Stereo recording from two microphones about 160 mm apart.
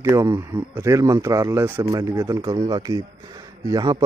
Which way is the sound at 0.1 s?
15° right (ahead or behind).